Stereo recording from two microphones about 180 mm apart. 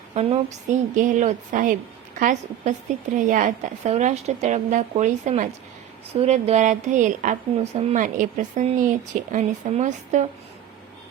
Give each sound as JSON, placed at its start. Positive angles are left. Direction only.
{"t": 0.1, "sound": "a woman's voice", "side_deg": -35}